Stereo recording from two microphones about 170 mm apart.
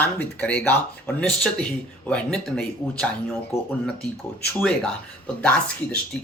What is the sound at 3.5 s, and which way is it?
Speech, 15° left (ahead or behind).